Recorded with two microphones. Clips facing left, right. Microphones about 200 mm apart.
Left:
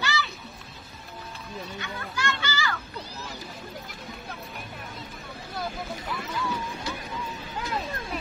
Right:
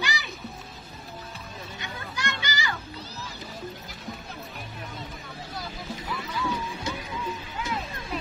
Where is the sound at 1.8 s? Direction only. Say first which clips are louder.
Left 2 dB; 15° right (ahead or behind).